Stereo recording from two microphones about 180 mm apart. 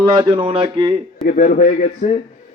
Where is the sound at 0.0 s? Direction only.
25° right (ahead or behind).